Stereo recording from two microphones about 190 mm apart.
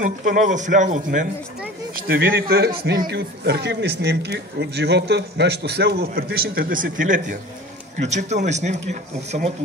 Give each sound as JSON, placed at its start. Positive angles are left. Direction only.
{"t": 0.0, "sound": "speech", "side_deg": -40}
{"t": 2.0, "sound": "a man's voice", "side_deg": -55}